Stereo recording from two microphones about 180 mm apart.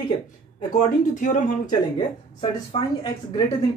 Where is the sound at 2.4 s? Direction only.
25° left (ahead or behind).